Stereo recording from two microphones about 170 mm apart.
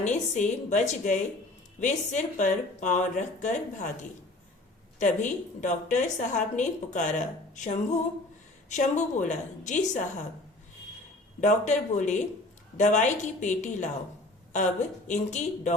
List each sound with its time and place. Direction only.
0.0 s a woman's voice: 45° left (ahead or behind)
4.9 s a woman's voice: 45° left (ahead or behind)
11.3 s a woman's voice: 45° left (ahead or behind)